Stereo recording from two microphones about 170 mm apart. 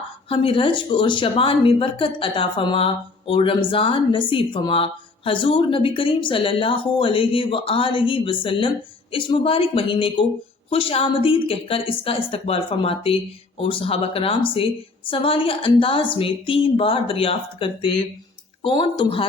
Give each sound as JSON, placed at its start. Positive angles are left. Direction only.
{"t": 0.3, "sound": "a woman's voice", "side_deg": 30}